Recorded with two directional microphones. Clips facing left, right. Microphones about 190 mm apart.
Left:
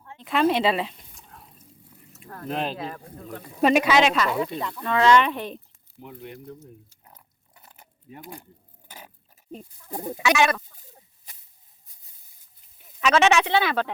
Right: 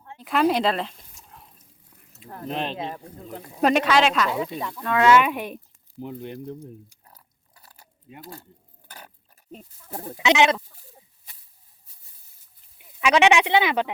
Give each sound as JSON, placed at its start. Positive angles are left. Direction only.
{"t": 0.2, "sound": "speech", "side_deg": 0}
{"t": 2.1, "sound": "a sound", "side_deg": -20}
{"t": 2.5, "sound": "speech", "side_deg": 0}
{"t": 2.7, "sound": "speech", "side_deg": -20}
{"t": 3.6, "sound": "speech", "side_deg": 5}
{"t": 6.0, "sound": "speech", "side_deg": -30}
{"t": 7.0, "sound": "a sound", "side_deg": 20}
{"t": 9.9, "sound": "speech", "side_deg": 15}
{"t": 10.2, "sound": "speech", "side_deg": -20}
{"t": 12.8, "sound": "speech", "side_deg": -10}